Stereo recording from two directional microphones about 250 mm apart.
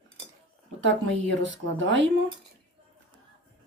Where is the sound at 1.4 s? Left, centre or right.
Right.